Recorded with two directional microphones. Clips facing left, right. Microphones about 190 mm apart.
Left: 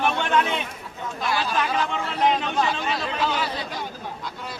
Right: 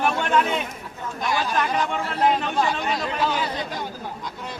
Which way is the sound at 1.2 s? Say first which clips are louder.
Right 1 dB; centre (ahead or behind).